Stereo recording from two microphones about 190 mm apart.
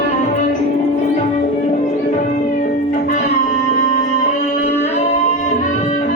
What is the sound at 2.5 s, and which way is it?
Music, 45° left (ahead or behind).